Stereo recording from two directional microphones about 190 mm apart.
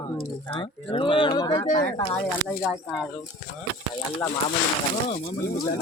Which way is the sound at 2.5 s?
Centre (ahead or behind).